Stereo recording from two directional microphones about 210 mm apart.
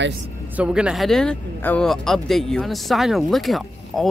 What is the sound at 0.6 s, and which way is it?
Speech, 5° right (ahead or behind).